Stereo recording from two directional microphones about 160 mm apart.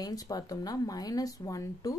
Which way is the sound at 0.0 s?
25° left (ahead or behind).